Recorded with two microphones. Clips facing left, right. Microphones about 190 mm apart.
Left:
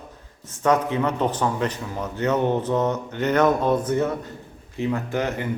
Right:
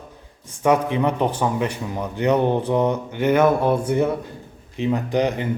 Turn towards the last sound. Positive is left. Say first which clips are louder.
# right 4 dB
turn(degrees=-15)  # may be behind; listen again after turning